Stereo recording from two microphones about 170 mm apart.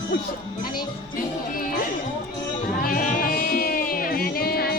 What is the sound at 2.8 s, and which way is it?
Music, 55° left (ahead or behind).